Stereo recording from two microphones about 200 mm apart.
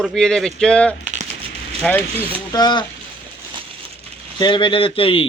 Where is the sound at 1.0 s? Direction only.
35° right (ahead or behind).